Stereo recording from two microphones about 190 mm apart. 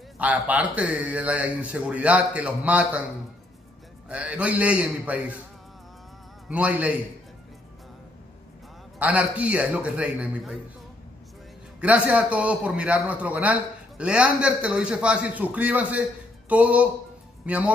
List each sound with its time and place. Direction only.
0.2 s a man's voice: 10° right (ahead or behind)
4.1 s a man's voice: 5° right (ahead or behind)
6.5 s a man's voice: 5° right (ahead or behind)
9.0 s a man's voice: 5° right (ahead or behind)
11.8 s a man's voice: 5° right (ahead or behind)